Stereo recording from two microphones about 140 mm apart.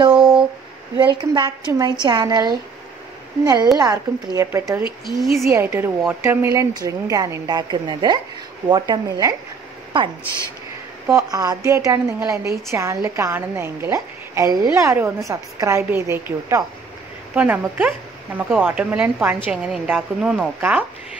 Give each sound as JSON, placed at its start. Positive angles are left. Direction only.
{"t": 0.1, "sound": "a sound", "side_deg": -5}
{"t": 0.9, "sound": "a woman's voice", "side_deg": -35}
{"t": 3.7, "sound": "a woman's voice", "side_deg": -30}
{"t": 5.0, "sound": "a woman's voice", "side_deg": 0}
{"t": 5.5, "sound": "a woman's voice", "side_deg": -15}
{"t": 11.1, "sound": "a woman's voice", "side_deg": -25}